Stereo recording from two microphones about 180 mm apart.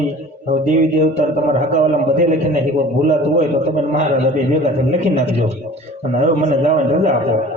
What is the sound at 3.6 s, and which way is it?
A man's voice, 40° right (ahead or behind).